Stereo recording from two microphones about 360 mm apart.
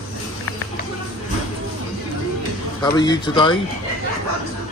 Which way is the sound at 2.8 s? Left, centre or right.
Centre.